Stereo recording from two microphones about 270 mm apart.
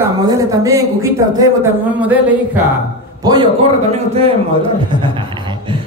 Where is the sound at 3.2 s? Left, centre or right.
Centre.